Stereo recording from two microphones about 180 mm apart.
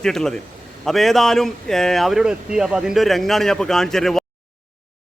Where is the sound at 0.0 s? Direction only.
Centre (ahead or behind).